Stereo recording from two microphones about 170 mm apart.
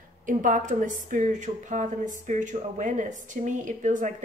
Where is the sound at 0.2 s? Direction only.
50° right (ahead or behind).